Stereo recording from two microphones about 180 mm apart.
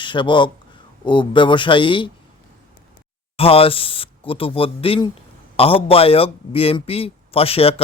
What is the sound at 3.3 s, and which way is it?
Speech, 30° left (ahead or behind).